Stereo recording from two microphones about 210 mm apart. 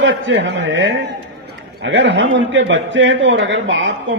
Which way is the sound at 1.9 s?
60° right (ahead or behind).